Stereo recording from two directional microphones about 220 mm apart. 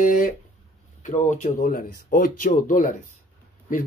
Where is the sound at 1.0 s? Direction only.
35° left (ahead or behind).